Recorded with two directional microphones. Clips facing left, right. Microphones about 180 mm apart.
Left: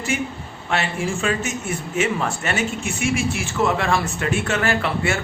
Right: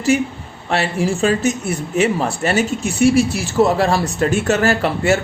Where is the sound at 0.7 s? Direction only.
35° right (ahead or behind).